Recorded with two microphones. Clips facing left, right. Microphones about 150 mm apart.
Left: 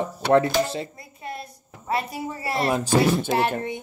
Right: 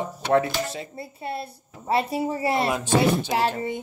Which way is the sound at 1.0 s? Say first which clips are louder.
Right 4 dB; 30° right (ahead or behind).